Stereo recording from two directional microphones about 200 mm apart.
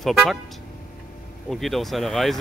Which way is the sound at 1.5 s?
Centre (ahead or behind).